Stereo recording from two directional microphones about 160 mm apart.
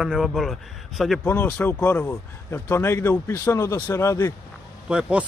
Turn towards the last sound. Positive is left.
turn(degrees=-5)  # may be behind; listen again after turning